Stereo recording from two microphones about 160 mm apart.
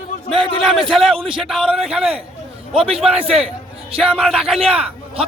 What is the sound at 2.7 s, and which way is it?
Speech, 35° right (ahead or behind).